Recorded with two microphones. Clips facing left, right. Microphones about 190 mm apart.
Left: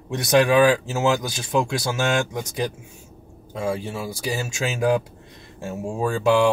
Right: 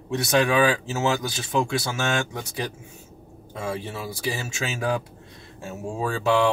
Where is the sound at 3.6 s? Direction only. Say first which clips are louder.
Left 4 dB; 10° left (ahead or behind).